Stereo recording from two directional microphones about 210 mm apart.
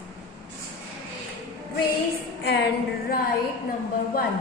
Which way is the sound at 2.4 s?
50° left (ahead or behind).